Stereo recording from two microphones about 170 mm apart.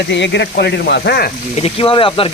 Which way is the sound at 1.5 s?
35° left (ahead or behind).